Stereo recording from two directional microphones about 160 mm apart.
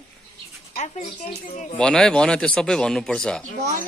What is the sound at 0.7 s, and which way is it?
Speech, 45° left (ahead or behind).